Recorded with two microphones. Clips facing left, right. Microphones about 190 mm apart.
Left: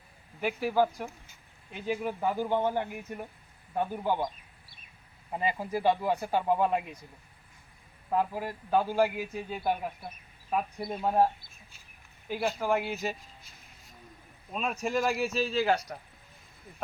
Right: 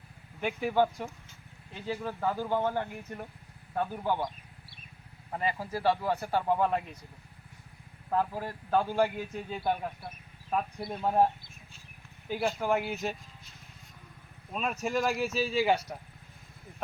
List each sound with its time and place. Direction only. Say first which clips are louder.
0.3 s speech: even; 5° left (ahead or behind)
1.7 s a man's voice: left 3 dB; 15° left (ahead or behind)
5.3 s a man's voice: left 2 dB; 15° left (ahead or behind)
8.1 s a man's voice: left 1 dB; 10° left (ahead or behind)
12.3 s speech: even; 5° left (ahead or behind)
14.5 s speech: left 1 dB; centre (ahead or behind)